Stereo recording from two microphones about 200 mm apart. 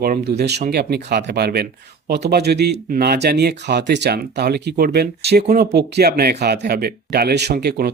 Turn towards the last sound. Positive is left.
turn(degrees=-55)  # may be behind; listen again after turning